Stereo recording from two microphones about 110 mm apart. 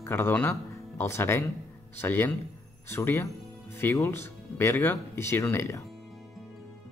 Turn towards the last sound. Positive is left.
turn(degrees=25)  # may be behind; listen again after turning